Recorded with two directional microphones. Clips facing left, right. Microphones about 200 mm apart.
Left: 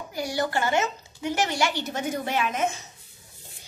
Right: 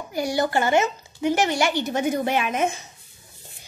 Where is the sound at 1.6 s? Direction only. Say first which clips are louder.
Right 4 dB; 50° right (ahead or behind).